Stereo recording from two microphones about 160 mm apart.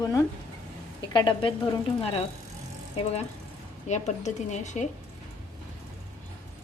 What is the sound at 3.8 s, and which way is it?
Speech, 45° left (ahead or behind).